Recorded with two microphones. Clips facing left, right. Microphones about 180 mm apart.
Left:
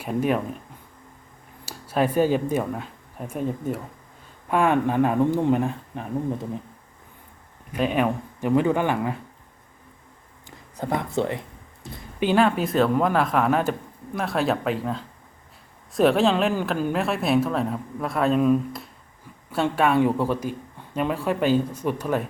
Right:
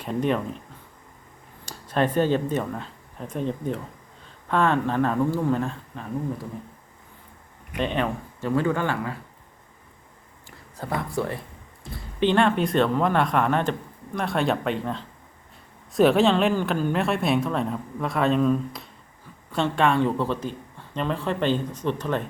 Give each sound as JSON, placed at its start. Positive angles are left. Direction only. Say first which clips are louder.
{"t": 0.0, "sound": "speech", "louder": "left 1 dB", "side_deg": 10}
{"t": 1.6, "sound": "speech", "louder": "left 1 dB", "side_deg": 10}
{"t": 7.8, "sound": "speech", "louder": "left 3 dB", "side_deg": 10}
{"t": 10.8, "sound": "speech", "louder": "left 3 dB", "side_deg": 20}
{"t": 12.2, "sound": "speech", "louder": "even", "side_deg": 5}